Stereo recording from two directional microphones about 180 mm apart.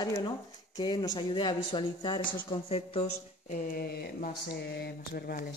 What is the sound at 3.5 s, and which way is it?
Speech, 55° left (ahead or behind).